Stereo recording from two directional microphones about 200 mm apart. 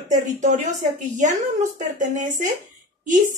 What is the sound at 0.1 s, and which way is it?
A woman's voice, 40° right (ahead or behind).